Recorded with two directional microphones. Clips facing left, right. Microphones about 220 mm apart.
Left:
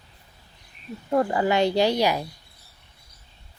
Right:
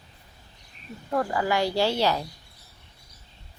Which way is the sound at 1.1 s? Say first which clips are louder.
Left 4 dB; 25° left (ahead or behind).